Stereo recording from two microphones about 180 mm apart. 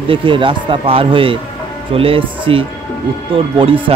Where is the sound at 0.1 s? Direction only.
30° right (ahead or behind).